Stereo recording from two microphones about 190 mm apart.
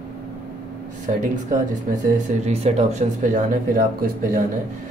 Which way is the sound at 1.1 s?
35° right (ahead or behind).